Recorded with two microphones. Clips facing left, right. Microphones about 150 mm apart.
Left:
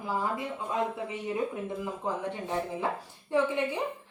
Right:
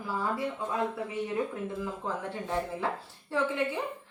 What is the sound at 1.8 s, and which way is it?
A woman's voice, 15° left (ahead or behind).